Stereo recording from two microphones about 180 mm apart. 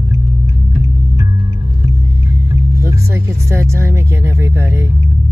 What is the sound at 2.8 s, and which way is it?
Speech, 15° right (ahead or behind).